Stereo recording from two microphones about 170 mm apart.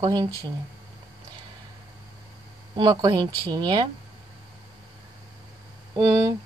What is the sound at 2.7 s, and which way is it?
A woman's voice, 25° right (ahead or behind).